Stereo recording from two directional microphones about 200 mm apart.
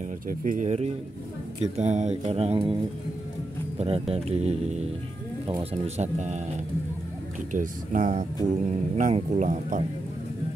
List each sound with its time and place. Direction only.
0.3 s speech: 40° right (ahead or behind)
2.2 s mantra: 30° right (ahead or behind)
3.7 s mantra: 30° right (ahead or behind)
4.3 s speech: 30° right (ahead or behind)
7.5 s speech: 40° right (ahead or behind)